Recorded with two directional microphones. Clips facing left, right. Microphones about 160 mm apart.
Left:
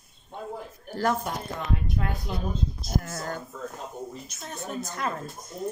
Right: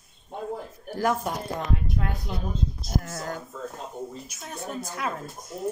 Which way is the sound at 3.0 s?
5° right (ahead or behind).